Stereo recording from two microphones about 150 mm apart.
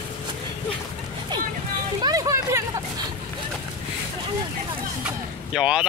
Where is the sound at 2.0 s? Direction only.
25° right (ahead or behind).